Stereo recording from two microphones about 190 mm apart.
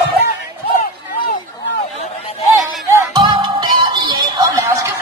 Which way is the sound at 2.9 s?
20° right (ahead or behind).